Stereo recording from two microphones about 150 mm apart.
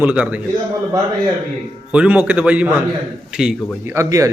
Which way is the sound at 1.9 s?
10° right (ahead or behind).